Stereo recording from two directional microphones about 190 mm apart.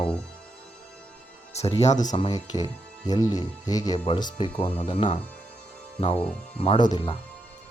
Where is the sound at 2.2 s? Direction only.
25° left (ahead or behind).